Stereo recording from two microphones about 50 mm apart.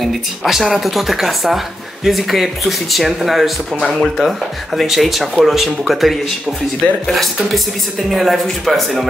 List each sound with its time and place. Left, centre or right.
0.0 s speech: centre